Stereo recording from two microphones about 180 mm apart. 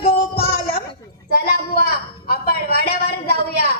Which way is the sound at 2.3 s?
60° left (ahead or behind).